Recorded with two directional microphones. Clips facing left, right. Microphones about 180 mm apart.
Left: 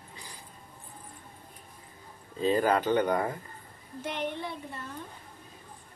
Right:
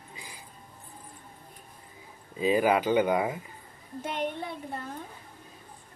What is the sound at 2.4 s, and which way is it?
Speech, 10° right (ahead or behind).